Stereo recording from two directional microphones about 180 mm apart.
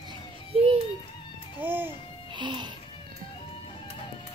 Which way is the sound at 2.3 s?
25° right (ahead or behind).